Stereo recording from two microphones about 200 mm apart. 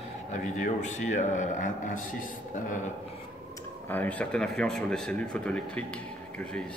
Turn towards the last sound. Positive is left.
turn(degrees=5)  # may be behind; listen again after turning